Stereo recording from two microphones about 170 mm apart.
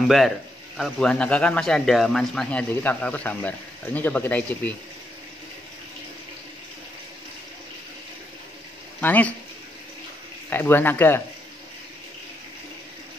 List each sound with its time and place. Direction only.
0.7 s a man's voice: 5° left (ahead or behind)
9.0 s speech: 10° left (ahead or behind)
10.5 s speech: 10° left (ahead or behind)